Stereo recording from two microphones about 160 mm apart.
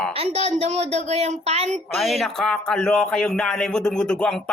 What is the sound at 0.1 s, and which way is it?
A woman's voice, 40° right (ahead or behind).